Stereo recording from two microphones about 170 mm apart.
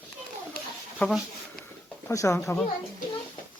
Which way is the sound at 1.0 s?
Centre (ahead or behind).